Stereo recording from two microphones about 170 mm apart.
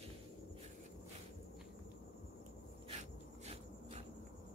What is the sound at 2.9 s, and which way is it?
Insect, 40° right (ahead or behind).